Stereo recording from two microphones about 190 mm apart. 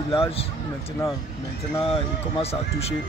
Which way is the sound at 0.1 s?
30° left (ahead or behind).